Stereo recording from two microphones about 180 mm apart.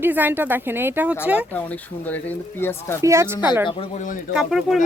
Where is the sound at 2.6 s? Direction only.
15° left (ahead or behind).